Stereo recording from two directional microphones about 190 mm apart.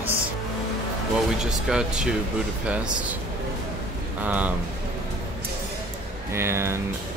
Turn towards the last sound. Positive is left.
turn(degrees=-15)  # may be behind; listen again after turning